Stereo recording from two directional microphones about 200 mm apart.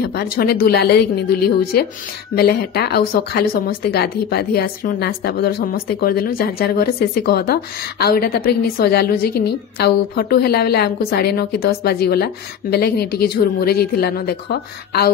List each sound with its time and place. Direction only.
0.1 s speech: 50° left (ahead or behind)